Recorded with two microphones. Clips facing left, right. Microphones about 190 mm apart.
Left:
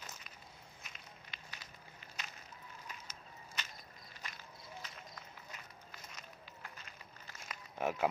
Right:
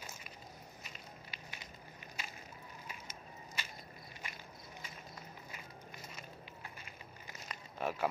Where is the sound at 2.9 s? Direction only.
10° right (ahead or behind).